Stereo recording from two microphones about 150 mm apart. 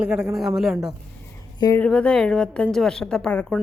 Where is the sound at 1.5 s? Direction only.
25° left (ahead or behind).